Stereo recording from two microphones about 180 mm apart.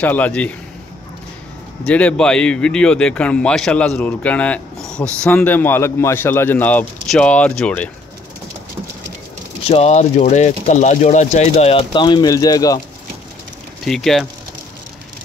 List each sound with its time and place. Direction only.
0.0 s a man's voice: 10° left (ahead or behind)
1.9 s a man's voice: 5° left (ahead or behind)
9.7 s speech: 35° left (ahead or behind); by 12.8 s 20° left (ahead or behind)
13.8 s speech: centre (ahead or behind)